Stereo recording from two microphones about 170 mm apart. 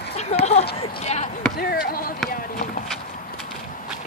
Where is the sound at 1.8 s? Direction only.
60° left (ahead or behind).